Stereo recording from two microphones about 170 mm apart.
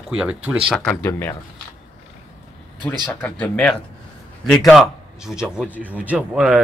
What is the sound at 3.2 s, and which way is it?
A man's voice, 10° left (ahead or behind).